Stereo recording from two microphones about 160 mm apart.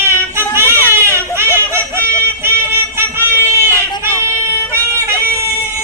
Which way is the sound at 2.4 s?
15° right (ahead or behind).